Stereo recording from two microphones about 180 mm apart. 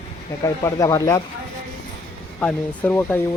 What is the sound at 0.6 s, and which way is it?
Speech, 20° left (ahead or behind).